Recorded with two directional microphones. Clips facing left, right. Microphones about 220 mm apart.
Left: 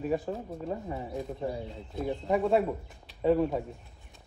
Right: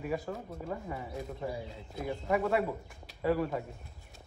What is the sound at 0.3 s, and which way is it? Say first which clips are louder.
Speech: left 4 dB; 20° left (ahead or behind).